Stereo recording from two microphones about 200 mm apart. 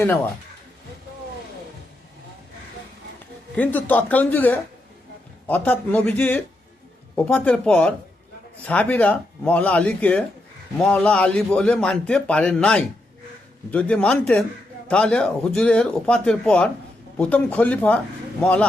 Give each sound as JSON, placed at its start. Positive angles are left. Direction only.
{"t": 3.5, "sound": "a man's voice", "side_deg": 10}